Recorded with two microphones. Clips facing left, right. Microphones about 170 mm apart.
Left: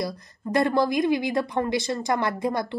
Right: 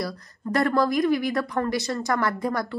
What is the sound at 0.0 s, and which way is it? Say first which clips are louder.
A woman's voice: left 1 dB; 20° left (ahead or behind).